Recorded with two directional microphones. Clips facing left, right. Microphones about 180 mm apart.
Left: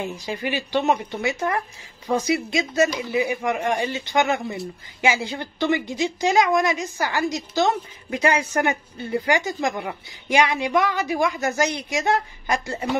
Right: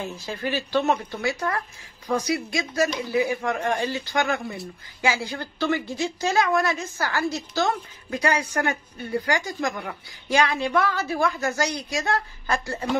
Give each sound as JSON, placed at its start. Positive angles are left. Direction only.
{"t": 0.0, "sound": "a woman's voice", "side_deg": 15}